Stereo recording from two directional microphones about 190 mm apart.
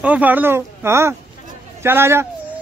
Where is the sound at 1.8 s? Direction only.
10° right (ahead or behind).